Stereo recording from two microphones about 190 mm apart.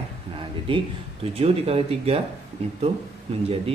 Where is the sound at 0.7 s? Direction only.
30° right (ahead or behind).